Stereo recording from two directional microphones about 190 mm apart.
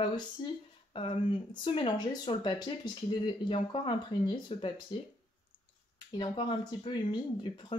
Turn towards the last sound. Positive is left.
turn(degrees=25)  # may be behind; listen again after turning